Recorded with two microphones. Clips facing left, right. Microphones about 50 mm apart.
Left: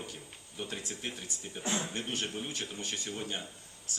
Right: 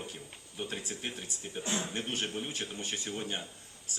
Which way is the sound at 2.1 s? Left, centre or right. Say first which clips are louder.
Right 1 dB; centre.